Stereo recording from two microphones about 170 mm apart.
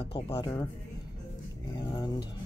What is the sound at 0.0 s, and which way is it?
Speech, 30° left (ahead or behind).